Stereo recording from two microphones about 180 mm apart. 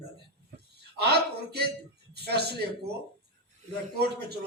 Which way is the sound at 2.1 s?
65° right (ahead or behind).